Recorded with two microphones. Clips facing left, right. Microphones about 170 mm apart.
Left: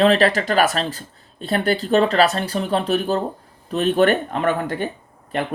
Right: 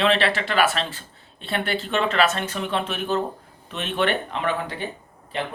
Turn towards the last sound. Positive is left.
turn(degrees=50)  # may be behind; listen again after turning